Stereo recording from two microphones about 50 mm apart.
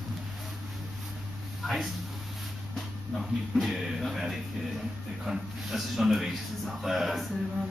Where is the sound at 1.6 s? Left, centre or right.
Centre.